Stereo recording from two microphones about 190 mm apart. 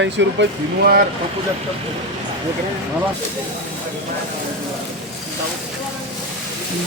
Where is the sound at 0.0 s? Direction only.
70° right (ahead or behind).